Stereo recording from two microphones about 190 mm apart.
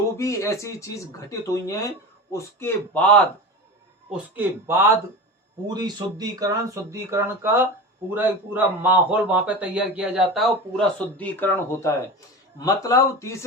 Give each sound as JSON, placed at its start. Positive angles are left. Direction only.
{"t": 0.2, "sound": "speech", "side_deg": 15}
{"t": 4.4, "sound": "a man's voice", "side_deg": -10}